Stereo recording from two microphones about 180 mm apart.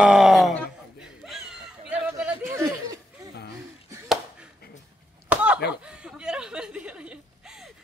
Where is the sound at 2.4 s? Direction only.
15° right (ahead or behind).